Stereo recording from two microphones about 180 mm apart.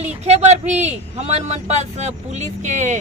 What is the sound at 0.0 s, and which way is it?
Speech, 35° right (ahead or behind).